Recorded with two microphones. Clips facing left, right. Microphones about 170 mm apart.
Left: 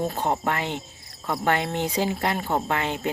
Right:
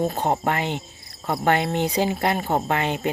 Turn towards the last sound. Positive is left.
turn(degrees=-15)  # may be behind; listen again after turning